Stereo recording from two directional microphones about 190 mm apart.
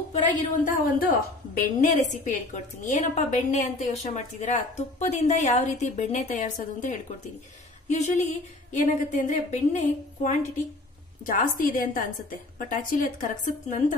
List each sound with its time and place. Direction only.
0.3 s a woman's voice: 45° left (ahead or behind)